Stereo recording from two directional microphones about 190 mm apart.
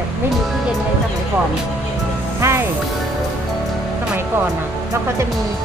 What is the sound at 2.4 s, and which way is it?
Speech, 15° right (ahead or behind).